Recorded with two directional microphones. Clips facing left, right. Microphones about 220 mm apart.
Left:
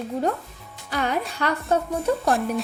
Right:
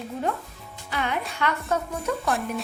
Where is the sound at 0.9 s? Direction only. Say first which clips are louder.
Left 3 dB; 40° left (ahead or behind).